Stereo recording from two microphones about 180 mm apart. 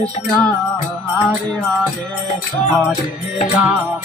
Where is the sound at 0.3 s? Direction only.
5° left (ahead or behind).